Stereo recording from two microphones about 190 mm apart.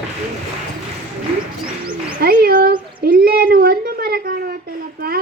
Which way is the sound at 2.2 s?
55° right (ahead or behind).